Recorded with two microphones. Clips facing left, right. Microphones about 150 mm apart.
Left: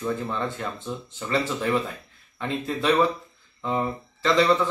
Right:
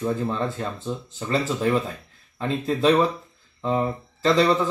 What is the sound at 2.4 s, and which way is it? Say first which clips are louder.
Speech: right 5 dB; 35° right (ahead or behind).